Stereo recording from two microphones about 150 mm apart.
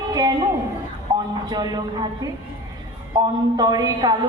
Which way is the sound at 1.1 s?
25° right (ahead or behind).